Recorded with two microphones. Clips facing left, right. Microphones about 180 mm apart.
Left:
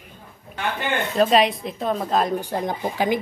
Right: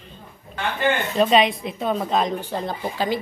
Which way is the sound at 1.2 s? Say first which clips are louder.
Left 1 dB; centre (ahead or behind).